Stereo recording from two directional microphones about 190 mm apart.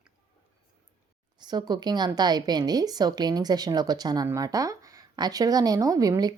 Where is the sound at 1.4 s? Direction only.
20° right (ahead or behind).